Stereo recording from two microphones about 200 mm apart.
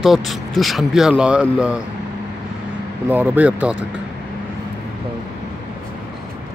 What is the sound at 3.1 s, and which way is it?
Speech, 10° right (ahead or behind).